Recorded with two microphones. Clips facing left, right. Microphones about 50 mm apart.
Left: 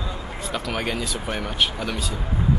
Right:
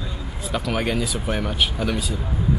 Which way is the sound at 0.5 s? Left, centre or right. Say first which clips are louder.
Right 4 dB; centre.